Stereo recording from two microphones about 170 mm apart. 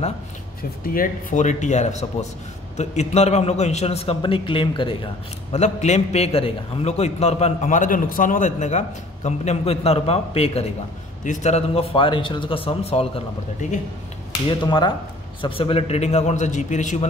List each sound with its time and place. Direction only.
0.6 s a man's voice: 60° left (ahead or behind); by 13.7 s 40° left (ahead or behind)
14.6 s a man's voice: 25° left (ahead or behind); by 17.1 s 45° left (ahead or behind)